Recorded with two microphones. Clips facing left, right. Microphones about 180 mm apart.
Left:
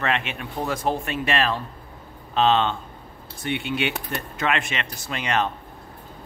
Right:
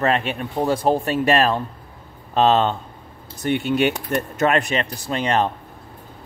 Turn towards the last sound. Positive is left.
turn(degrees=-35)  # may be behind; listen again after turning